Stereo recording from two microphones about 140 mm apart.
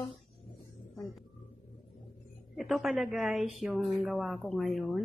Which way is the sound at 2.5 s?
Centre (ahead or behind).